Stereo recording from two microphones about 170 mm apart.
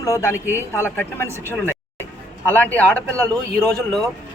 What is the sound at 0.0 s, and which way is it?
A man's voice, 15° left (ahead or behind).